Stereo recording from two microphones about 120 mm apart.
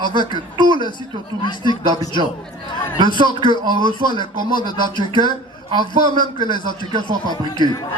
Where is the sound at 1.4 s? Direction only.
40° left (ahead or behind).